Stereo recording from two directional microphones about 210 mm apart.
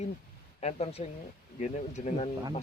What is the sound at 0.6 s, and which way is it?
Speech, 30° left (ahead or behind).